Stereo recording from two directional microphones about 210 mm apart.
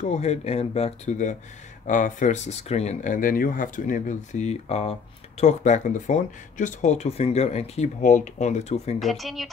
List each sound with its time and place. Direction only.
0.0 s speech: 30° left (ahead or behind)
9.0 s speech: centre (ahead or behind)